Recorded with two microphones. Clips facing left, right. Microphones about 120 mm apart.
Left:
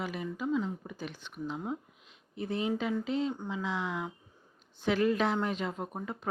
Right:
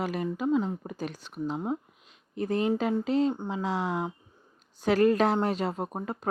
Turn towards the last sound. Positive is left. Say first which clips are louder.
# right 5 dB
turn(degrees=-40)  # may be behind; listen again after turning